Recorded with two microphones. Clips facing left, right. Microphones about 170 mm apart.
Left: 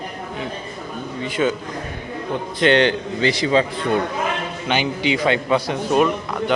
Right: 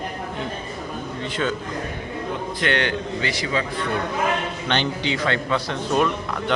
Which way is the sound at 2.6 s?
25° left (ahead or behind).